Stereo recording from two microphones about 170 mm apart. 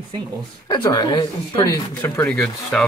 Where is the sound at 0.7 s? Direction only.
25° left (ahead or behind).